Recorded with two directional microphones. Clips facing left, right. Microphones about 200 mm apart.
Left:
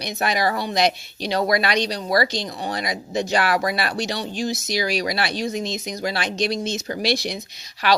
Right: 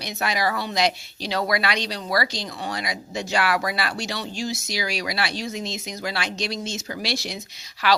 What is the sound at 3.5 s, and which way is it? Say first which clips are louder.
Speech: left 3 dB; 40° left (ahead or behind).